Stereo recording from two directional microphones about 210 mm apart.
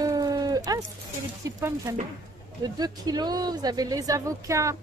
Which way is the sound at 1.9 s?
15° right (ahead or behind).